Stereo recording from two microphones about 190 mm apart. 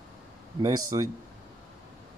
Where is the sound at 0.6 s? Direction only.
20° right (ahead or behind).